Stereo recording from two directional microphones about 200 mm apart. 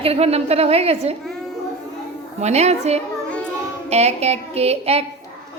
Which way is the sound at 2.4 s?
35° right (ahead or behind).